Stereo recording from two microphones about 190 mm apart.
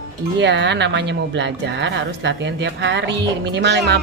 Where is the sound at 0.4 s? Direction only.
65° right (ahead or behind).